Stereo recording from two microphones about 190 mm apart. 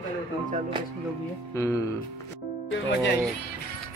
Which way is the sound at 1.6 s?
15° left (ahead or behind).